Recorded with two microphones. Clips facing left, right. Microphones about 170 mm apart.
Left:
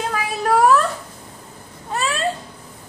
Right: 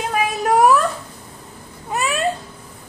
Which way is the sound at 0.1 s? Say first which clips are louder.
Right 3 dB; 15° right (ahead or behind).